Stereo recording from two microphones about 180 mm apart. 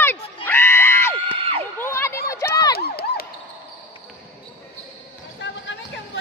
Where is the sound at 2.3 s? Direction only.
20° left (ahead or behind).